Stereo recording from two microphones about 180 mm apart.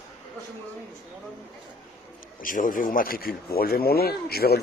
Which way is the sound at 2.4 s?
50° left (ahead or behind).